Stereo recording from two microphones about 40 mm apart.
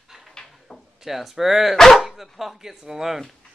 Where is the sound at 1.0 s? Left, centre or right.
Centre.